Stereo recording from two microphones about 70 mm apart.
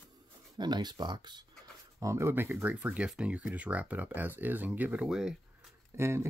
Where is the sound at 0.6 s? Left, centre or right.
Right.